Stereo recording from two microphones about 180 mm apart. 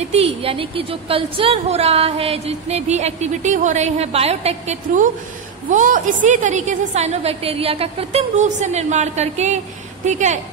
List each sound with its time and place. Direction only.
0.0 s a woman's voice: 35° right (ahead or behind)